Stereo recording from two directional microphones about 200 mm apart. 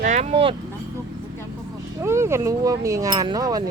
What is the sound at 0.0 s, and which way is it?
Speech, 35° right (ahead or behind).